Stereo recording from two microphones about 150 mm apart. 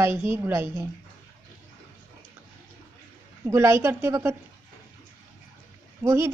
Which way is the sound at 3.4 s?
15° right (ahead or behind).